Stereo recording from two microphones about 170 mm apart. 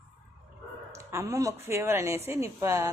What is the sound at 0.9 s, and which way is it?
Speech, 15° right (ahead or behind).